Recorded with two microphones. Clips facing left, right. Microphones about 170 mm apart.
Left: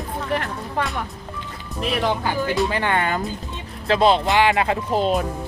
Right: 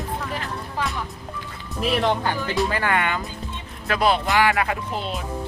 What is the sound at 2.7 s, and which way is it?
Speech, 25° left (ahead or behind).